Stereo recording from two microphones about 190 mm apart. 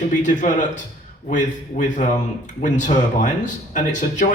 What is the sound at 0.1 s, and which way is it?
Speech, 40° left (ahead or behind).